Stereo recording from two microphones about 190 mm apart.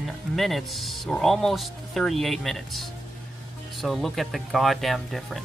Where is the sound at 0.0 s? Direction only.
Centre (ahead or behind).